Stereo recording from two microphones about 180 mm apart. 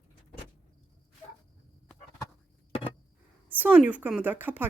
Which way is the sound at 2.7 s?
30° left (ahead or behind).